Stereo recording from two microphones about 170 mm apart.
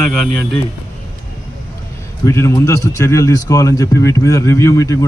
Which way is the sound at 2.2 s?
15° left (ahead or behind).